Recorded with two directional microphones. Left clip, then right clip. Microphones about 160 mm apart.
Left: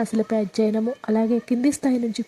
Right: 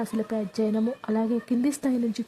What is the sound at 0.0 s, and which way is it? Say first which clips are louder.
Speech: left 6 dB; 25° left (ahead or behind).